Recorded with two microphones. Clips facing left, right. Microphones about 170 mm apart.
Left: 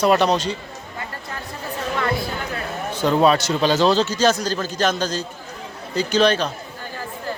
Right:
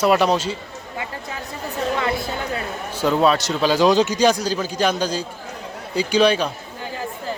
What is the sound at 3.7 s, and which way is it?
A man's voice, 10° right (ahead or behind).